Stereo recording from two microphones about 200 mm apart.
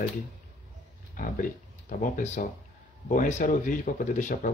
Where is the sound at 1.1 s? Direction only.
40° left (ahead or behind).